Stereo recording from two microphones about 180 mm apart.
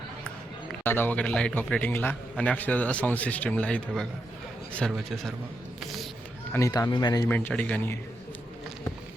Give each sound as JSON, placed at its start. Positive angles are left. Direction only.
{"t": 0.9, "sound": "a man's voice", "side_deg": 10}
{"t": 5.8, "sound": "a sound", "side_deg": 0}
{"t": 6.5, "sound": "speech", "side_deg": 20}
{"t": 7.3, "sound": "a man's voice", "side_deg": 10}